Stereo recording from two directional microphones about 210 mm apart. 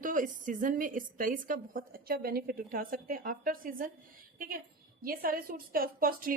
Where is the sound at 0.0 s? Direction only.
40° right (ahead or behind).